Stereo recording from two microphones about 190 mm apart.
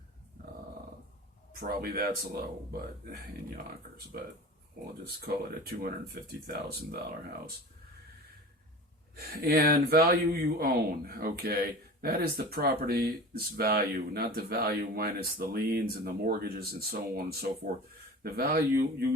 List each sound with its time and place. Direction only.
1.6 s speech: 55° right (ahead or behind)
5.3 s speech: 55° right (ahead or behind)
9.1 s speech: 55° right (ahead or behind)